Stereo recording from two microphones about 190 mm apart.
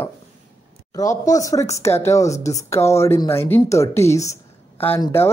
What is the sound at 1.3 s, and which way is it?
Speech, 15° left (ahead or behind).